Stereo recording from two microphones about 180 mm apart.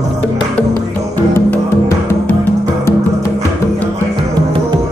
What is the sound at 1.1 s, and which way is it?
Music, 15° left (ahead or behind).